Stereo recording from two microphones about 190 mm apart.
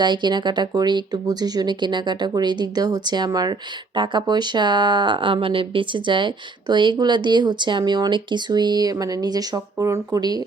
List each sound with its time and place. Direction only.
0.0 s speech: 25° right (ahead or behind)